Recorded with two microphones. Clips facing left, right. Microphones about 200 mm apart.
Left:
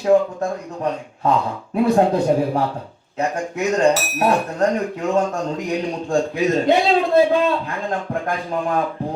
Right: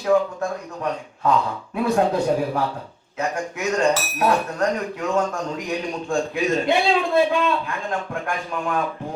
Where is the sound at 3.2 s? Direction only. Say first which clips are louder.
Left 3 dB; 30° left (ahead or behind).